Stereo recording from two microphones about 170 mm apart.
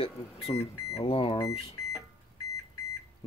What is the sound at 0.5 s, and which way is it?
Speech, 30° left (ahead or behind).